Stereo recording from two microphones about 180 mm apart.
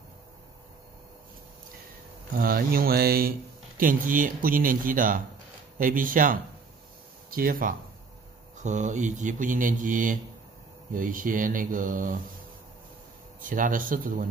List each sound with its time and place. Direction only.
2.3 s speech: 55° right (ahead or behind)
8.6 s speech: 40° right (ahead or behind)
13.4 s speech: 45° right (ahead or behind)